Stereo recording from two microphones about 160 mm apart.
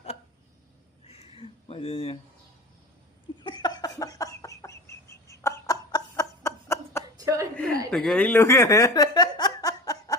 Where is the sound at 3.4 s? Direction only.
30° left (ahead or behind).